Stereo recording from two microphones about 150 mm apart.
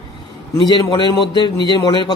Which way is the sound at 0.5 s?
30° left (ahead or behind).